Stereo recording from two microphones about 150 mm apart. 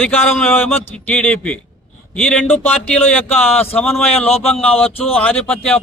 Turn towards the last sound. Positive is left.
turn(degrees=10)  # may be behind; listen again after turning